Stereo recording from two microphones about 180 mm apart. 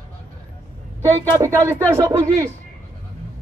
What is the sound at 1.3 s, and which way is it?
A man's voice, 15° right (ahead or behind).